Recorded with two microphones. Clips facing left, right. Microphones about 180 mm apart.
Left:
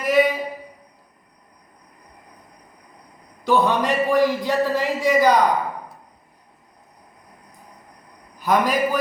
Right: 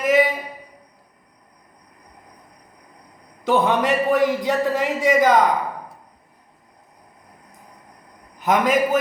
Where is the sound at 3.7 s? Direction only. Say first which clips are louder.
Right 1 dB; 20° right (ahead or behind).